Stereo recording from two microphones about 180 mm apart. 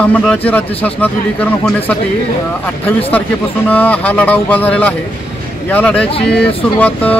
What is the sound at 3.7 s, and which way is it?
Speech, 10° left (ahead or behind).